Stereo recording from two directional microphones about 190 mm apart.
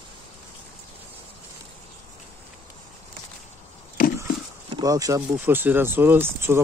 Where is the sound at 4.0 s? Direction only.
50° left (ahead or behind).